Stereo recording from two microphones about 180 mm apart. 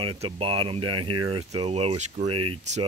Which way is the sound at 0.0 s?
30° right (ahead or behind).